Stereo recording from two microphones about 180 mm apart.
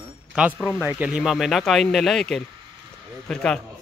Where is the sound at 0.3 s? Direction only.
5° right (ahead or behind).